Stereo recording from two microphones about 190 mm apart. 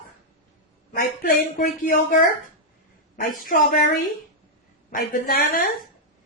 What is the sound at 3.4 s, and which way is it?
A woman's voice, 50° left (ahead or behind).